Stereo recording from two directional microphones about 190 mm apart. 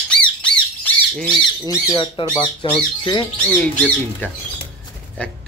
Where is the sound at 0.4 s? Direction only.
5° left (ahead or behind).